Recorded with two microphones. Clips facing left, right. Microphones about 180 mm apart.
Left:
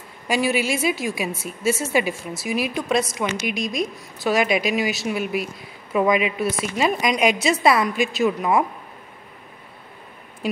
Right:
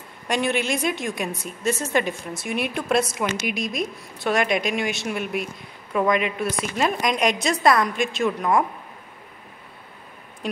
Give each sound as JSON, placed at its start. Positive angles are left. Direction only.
{"t": 0.3, "sound": "a woman's voice", "side_deg": 5}
{"t": 10.4, "sound": "a woman's voice", "side_deg": 5}